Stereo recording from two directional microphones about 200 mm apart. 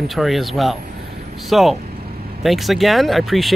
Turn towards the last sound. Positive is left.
turn(degrees=0)  # may be behind; listen again after turning